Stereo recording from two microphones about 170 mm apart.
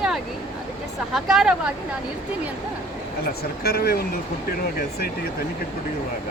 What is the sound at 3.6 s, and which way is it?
Speech, 65° left (ahead or behind).